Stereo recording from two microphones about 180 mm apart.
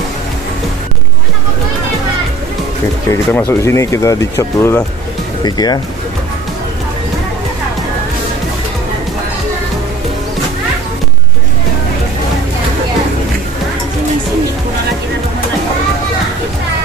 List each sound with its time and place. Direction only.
3.1 s speech: 15° left (ahead or behind)